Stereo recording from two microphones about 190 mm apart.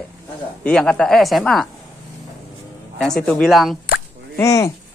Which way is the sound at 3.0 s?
5° left (ahead or behind).